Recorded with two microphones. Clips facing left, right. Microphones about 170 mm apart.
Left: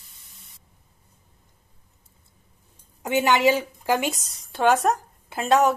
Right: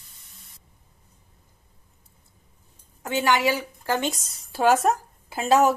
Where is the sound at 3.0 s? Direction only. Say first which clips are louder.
Left 3 dB; 20° left (ahead or behind).